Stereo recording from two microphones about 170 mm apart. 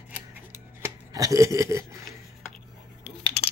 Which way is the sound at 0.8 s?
20° right (ahead or behind).